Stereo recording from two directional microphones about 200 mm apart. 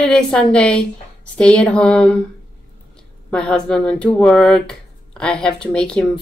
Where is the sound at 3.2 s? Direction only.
5° left (ahead or behind).